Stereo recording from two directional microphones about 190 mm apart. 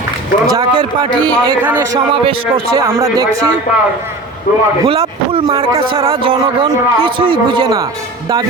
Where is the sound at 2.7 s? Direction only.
15° right (ahead or behind).